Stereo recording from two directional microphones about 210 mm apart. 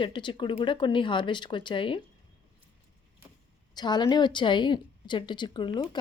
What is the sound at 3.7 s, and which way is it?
Speech, 20° left (ahead or behind).